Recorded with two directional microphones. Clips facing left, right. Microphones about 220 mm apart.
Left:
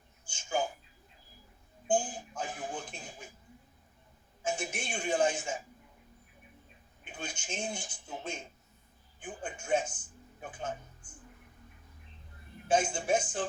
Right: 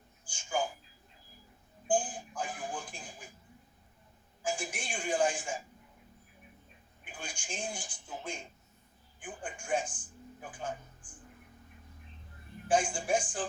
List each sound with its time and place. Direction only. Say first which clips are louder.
0.3 s speech: left 1 dB; 25° left (ahead or behind)
1.9 s speech: left 1 dB; 25° left (ahead or behind)
4.4 s speech: left 1 dB; 25° left (ahead or behind)
7.0 s speech: left 3 dB; 25° left (ahead or behind)
12.6 s speech: left 1 dB; 25° left (ahead or behind)